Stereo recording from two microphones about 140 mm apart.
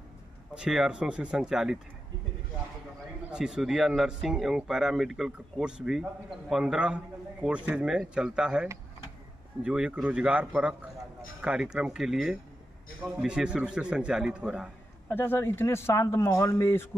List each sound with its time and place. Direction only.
0.6 s speech: 5° right (ahead or behind)
3.3 s speech: 5° right (ahead or behind)
15.0 s speech: 15° left (ahead or behind)